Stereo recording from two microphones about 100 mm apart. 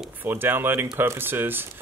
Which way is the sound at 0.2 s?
20° right (ahead or behind).